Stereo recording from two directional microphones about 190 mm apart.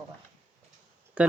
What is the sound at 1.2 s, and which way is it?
Speech, 5° right (ahead or behind).